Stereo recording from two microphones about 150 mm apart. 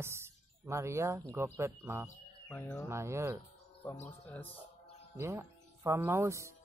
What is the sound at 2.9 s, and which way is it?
Speech, 20° right (ahead or behind).